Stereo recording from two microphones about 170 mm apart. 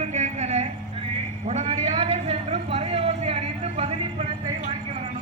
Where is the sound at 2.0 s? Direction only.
35° right (ahead or behind).